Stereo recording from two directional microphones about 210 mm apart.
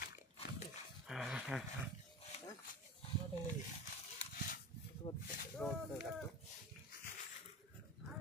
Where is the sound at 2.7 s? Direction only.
40° left (ahead or behind).